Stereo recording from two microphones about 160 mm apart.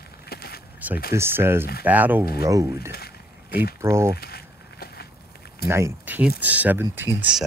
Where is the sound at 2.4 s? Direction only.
20° right (ahead or behind).